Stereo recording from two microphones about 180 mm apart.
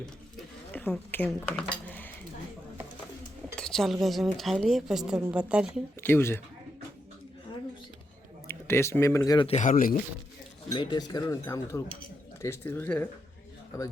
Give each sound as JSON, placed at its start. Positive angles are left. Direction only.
{"t": 0.0, "sound": "speech", "side_deg": 5}
{"t": 3.5, "sound": "dishes", "side_deg": 5}
{"t": 4.0, "sound": "speech", "side_deg": 0}
{"t": 6.0, "sound": "speech", "side_deg": 15}
{"t": 8.4, "sound": "speech", "side_deg": 15}
{"t": 9.5, "sound": "speech", "side_deg": 45}
{"t": 10.8, "sound": "speech", "side_deg": 25}